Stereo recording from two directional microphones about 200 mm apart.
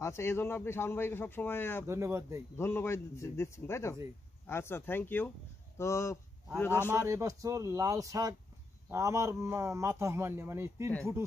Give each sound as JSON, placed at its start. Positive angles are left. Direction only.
{"t": 0.0, "sound": "a man's voice", "side_deg": 15}
{"t": 1.9, "sound": "a man's voice", "side_deg": -15}
{"t": 2.5, "sound": "a man's voice", "side_deg": 10}
{"t": 6.9, "sound": "a man's voice", "side_deg": -15}